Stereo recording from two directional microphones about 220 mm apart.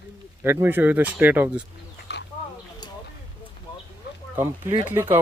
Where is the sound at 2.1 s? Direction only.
50° left (ahead or behind).